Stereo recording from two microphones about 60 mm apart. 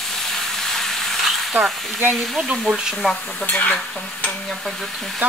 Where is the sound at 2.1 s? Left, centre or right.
Centre.